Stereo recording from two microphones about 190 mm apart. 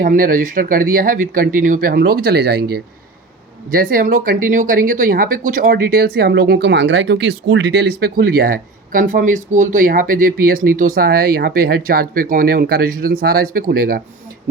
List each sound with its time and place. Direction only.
0.0 s speech: 45° right (ahead or behind)